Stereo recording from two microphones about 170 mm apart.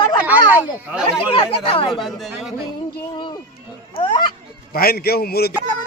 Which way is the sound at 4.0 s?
30° left (ahead or behind).